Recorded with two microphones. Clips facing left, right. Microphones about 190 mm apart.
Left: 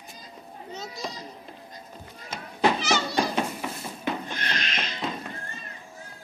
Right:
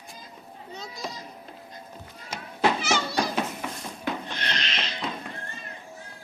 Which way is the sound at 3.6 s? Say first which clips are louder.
Left 1 dB; 5° left (ahead or behind).